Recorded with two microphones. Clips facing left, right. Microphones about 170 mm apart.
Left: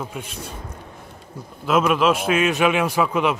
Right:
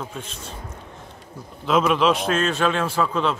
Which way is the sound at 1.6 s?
5° left (ahead or behind).